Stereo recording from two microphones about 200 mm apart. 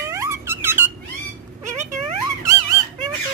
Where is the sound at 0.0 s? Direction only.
15° right (ahead or behind).